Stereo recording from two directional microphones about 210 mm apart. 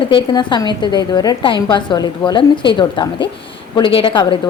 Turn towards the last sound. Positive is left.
turn(degrees=25)  # may be behind; listen again after turning